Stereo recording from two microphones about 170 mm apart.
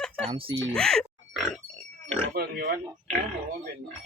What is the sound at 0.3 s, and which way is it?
Speech, 30° right (ahead or behind).